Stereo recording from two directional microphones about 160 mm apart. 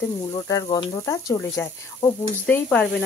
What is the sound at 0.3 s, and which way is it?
Speech, 20° left (ahead or behind).